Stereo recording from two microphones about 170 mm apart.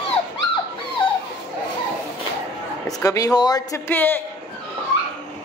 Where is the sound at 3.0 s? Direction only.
20° left (ahead or behind).